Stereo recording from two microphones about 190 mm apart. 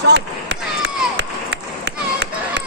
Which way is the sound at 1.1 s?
65° right (ahead or behind).